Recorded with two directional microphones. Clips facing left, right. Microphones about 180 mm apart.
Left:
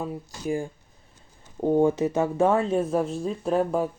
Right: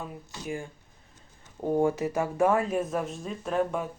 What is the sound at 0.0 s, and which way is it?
Speech, 35° left (ahead or behind).